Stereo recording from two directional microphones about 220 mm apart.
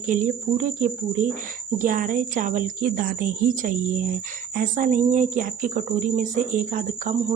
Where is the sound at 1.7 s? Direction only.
40° right (ahead or behind).